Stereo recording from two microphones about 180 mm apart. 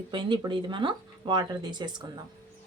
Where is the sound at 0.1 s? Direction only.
25° right (ahead or behind).